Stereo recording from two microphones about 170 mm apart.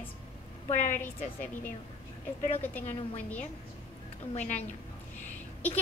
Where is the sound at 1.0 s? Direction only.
10° left (ahead or behind).